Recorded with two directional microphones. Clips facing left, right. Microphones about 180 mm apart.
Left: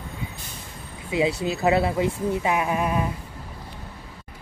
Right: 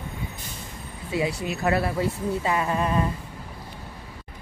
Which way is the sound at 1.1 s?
25° left (ahead or behind).